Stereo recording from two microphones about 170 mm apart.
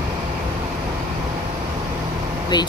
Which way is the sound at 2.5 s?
25° left (ahead or behind).